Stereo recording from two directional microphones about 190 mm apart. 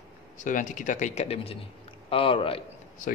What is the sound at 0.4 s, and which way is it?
Speech, 40° left (ahead or behind).